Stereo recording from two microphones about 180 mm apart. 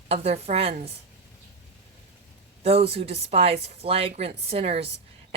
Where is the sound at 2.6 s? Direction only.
35° right (ahead or behind).